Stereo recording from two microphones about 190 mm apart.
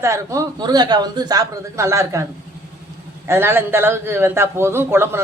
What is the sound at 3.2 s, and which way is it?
A man's voice, 10° right (ahead or behind).